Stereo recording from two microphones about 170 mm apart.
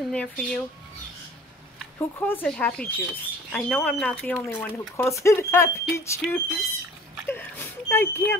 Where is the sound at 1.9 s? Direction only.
10° left (ahead or behind).